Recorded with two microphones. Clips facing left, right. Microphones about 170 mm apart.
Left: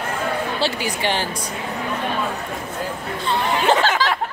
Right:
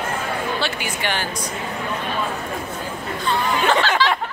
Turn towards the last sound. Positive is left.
turn(degrees=45)  # may be behind; listen again after turning